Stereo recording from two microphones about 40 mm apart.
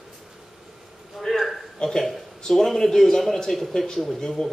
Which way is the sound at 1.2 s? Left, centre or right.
Centre.